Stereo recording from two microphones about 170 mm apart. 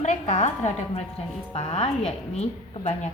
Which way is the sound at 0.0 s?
40° left (ahead or behind).